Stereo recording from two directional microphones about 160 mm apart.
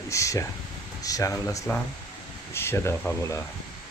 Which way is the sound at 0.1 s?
20° left (ahead or behind).